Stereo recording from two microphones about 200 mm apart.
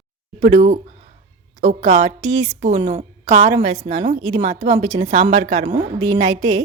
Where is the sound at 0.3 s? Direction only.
35° right (ahead or behind).